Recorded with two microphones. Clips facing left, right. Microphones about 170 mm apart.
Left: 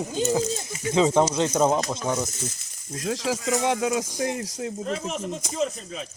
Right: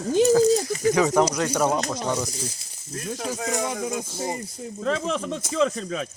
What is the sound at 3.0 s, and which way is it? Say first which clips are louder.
Speech: left 3 dB; 90° left.